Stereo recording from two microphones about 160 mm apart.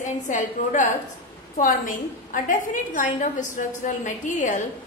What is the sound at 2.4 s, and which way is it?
A woman's voice, 55° left (ahead or behind).